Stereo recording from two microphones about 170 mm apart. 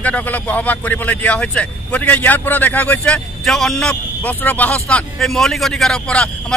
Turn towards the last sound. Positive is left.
turn(degrees=5)  # may be behind; listen again after turning